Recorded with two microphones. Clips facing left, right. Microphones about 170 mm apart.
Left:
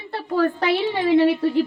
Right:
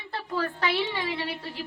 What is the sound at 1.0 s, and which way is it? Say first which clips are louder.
Speech: left 15 dB; 60° left (ahead or behind).